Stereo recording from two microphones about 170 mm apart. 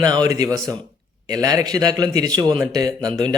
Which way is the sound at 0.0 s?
25° right (ahead or behind).